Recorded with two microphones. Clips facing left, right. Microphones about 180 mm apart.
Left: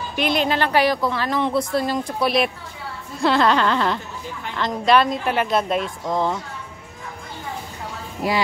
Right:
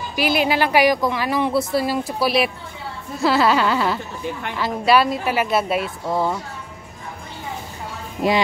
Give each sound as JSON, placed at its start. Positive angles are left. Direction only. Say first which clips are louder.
{"t": 0.1, "sound": "a woman's voice", "louder": "right 1 dB", "side_deg": -5}
{"t": 8.2, "sound": "speech", "louder": "right 4 dB", "side_deg": -20}